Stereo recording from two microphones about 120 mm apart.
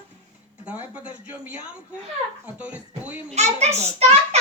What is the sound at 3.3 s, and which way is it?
A child's voice, 70° right (ahead or behind).